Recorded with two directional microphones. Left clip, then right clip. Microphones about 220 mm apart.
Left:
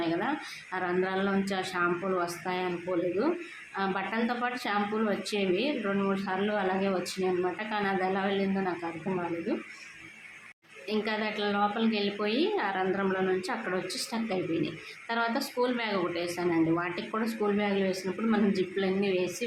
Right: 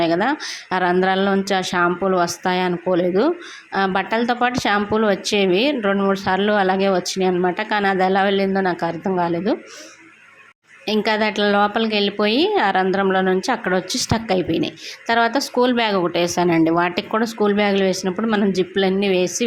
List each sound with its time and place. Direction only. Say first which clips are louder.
0.0 s a woman's voice: right 12 dB; 40° right (ahead or behind)
10.8 s a woman's voice: right 12 dB; 40° right (ahead or behind)